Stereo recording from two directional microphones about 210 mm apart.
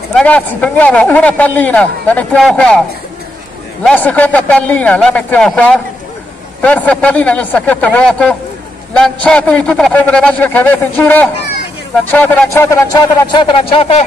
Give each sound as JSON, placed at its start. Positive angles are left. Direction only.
{"t": 0.1, "sound": "a man's voice", "side_deg": 5}
{"t": 3.8, "sound": "a man's voice", "side_deg": 5}